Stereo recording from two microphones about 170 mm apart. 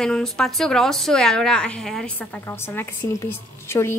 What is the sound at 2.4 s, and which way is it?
A woman's voice, 15° left (ahead or behind).